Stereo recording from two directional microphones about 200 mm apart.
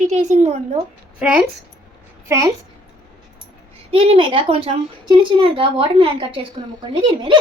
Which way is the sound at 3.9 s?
30° right (ahead or behind).